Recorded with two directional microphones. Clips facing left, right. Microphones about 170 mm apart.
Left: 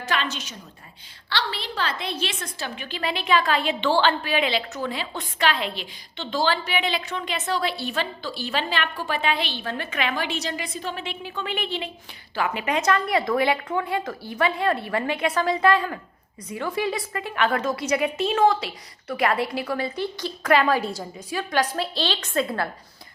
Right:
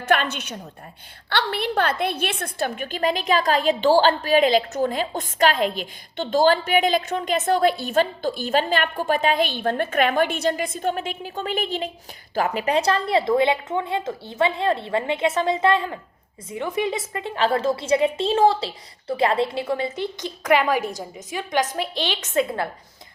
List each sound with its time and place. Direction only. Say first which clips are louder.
0.0 s a woman's voice: right 6 dB; 55° right (ahead or behind); by 22.7 s 20° right (ahead or behind)